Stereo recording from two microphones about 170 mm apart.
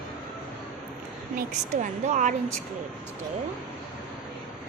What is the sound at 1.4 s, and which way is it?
Speech, 50° right (ahead or behind).